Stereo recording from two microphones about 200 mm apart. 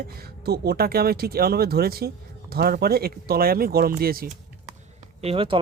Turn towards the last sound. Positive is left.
turn(degrees=-30)  # may be behind; listen again after turning